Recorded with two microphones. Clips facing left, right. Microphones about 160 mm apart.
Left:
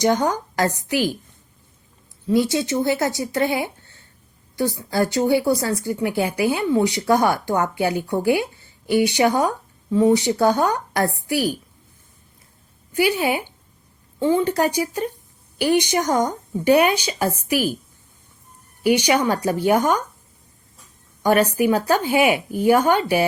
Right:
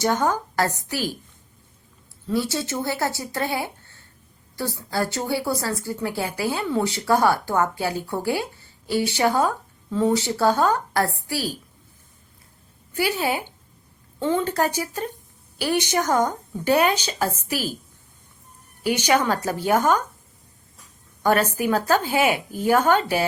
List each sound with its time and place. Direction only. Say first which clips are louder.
0.2 s a woman's voice: left 1 dB; 15° left (ahead or behind)
2.3 s a woman's voice: left 6 dB; 15° left (ahead or behind)
13.1 s a woman's voice: left 3 dB; 15° left (ahead or behind)
18.8 s a woman's voice: left 3 dB; 15° left (ahead or behind)
21.2 s a woman's voice: left 3 dB; 15° left (ahead or behind)